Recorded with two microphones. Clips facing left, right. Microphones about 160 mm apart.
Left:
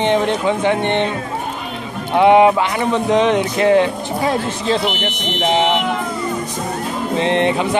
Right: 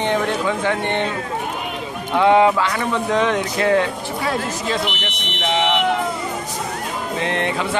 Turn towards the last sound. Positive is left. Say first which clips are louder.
# left 6 dB
turn(degrees=20)  # may be behind; listen again after turning